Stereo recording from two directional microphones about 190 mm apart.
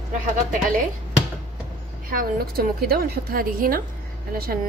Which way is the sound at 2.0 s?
50° right (ahead or behind).